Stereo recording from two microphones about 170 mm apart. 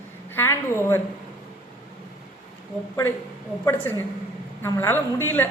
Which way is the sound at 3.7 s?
15° left (ahead or behind).